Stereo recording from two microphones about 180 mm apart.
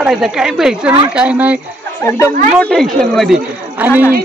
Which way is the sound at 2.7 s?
Centre (ahead or behind).